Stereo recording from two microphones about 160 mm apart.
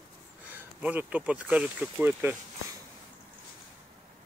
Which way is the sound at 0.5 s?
10° right (ahead or behind).